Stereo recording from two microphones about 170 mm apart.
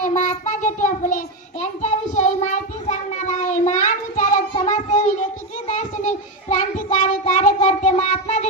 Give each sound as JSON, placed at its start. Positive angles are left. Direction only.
{"t": 0.2, "sound": "child singing", "side_deg": 45}